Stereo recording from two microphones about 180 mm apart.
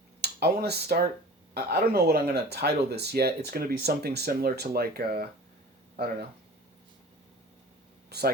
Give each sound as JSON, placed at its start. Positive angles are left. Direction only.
{"t": 0.2, "sound": "speech", "side_deg": -65}
{"t": 8.1, "sound": "speech", "side_deg": -65}